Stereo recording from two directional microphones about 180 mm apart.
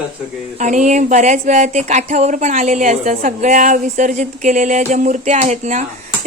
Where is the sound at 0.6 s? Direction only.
40° right (ahead or behind).